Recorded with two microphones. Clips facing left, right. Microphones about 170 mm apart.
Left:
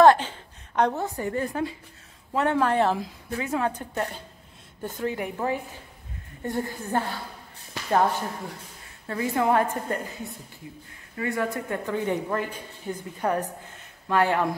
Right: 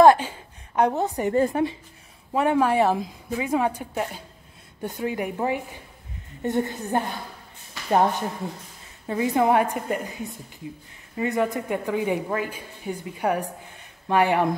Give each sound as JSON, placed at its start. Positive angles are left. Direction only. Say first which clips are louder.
{"t": 0.0, "sound": "a woman's voice", "louder": "right 2 dB", "side_deg": -10}
{"t": 9.0, "sound": "a woman's voice", "louder": "right 3 dB", "side_deg": -15}